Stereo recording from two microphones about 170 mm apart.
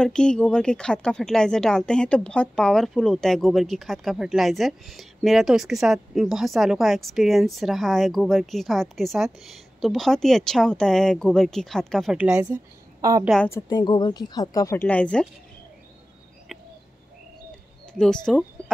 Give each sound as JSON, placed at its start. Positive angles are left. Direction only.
{"t": 0.0, "sound": "speech", "side_deg": 5}
{"t": 13.5, "sound": "speech", "side_deg": 20}
{"t": 14.8, "sound": "speech", "side_deg": 5}
{"t": 17.9, "sound": "speech", "side_deg": 5}